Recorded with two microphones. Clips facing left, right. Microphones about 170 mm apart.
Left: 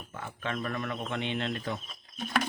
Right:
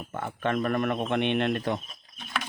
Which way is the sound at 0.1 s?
60° right (ahead or behind).